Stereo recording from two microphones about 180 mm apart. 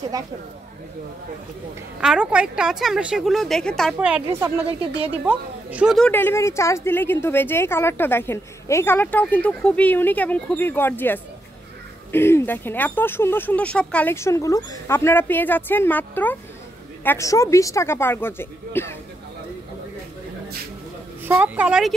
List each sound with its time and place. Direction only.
2.0 s a woman's voice: 5° right (ahead or behind)
4.6 s a woman's voice: 35° right (ahead or behind)
5.2 s a woman's voice: 5° right (ahead or behind)
5.9 s a woman's voice: 10° left (ahead or behind)
21.3 s a woman's voice: 10° right (ahead or behind)